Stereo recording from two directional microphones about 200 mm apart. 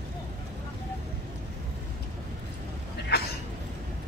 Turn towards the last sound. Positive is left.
turn(degrees=55)  # may be behind; listen again after turning